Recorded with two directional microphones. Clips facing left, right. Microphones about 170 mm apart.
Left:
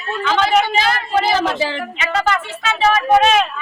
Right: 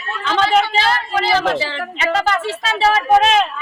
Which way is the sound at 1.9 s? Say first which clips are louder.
Right 2 dB; 35° right (ahead or behind).